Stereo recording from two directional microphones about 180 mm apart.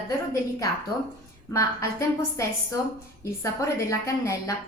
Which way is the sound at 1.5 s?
15° left (ahead or behind).